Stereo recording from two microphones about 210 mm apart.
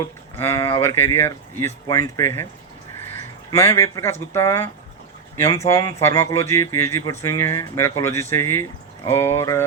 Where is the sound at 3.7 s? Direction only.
15° left (ahead or behind).